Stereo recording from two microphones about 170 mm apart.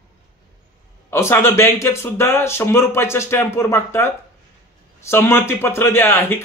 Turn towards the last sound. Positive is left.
turn(degrees=15)  # may be behind; listen again after turning